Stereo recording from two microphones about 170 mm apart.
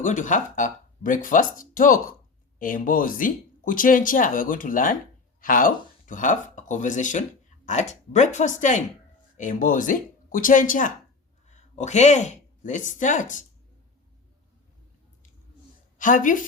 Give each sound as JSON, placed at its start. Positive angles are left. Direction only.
{"t": 0.0, "sound": "speech", "side_deg": 50}
{"t": 16.0, "sound": "a woman's voice", "side_deg": 50}